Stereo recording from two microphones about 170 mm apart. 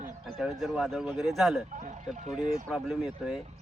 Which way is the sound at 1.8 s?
45° right (ahead or behind).